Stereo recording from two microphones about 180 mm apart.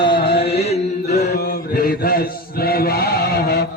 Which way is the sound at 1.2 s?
65° left (ahead or behind).